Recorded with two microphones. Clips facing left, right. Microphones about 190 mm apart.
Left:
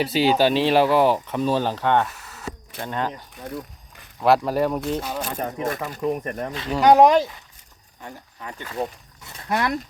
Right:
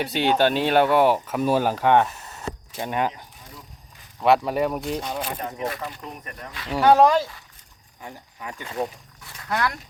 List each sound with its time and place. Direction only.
0.0 s speech: centre (ahead or behind)
1.4 s speech: 10° right (ahead or behind)
3.3 s a sound: 60° left (ahead or behind)
4.2 s speech: centre (ahead or behind)
5.2 s speech: 45° left (ahead or behind)
6.8 s speech: 15° left (ahead or behind)
8.0 s speech: 10° right (ahead or behind)
9.2 s speech: 20° left (ahead or behind)